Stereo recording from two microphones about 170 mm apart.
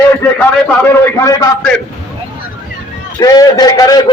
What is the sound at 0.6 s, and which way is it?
Speech, 15° left (ahead or behind).